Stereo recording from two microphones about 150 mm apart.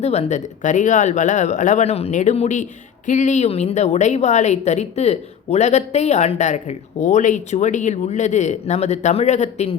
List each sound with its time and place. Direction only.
0.0 s a woman's voice: 45° left (ahead or behind)